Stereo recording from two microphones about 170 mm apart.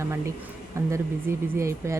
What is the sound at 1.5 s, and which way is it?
Speech, 15° right (ahead or behind).